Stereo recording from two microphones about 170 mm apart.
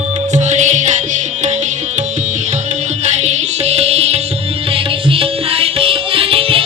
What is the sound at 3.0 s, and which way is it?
Music, 40° right (ahead or behind).